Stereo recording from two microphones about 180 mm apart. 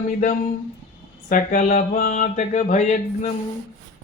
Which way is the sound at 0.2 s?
45° left (ahead or behind).